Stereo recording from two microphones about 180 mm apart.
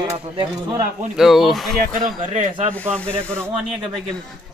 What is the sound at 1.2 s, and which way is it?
Speech, centre (ahead or behind).